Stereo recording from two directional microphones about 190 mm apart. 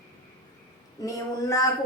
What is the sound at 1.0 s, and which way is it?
Speech, 15° left (ahead or behind).